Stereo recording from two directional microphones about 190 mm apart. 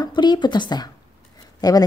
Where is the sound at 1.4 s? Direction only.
20° left (ahead or behind).